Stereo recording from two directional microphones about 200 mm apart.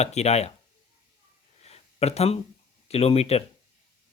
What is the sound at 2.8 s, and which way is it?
Speech, 30° left (ahead or behind).